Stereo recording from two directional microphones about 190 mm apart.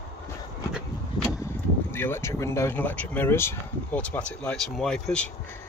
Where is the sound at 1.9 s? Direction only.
10° left (ahead or behind).